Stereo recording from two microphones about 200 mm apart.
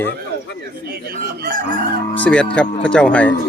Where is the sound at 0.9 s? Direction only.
50° right (ahead or behind).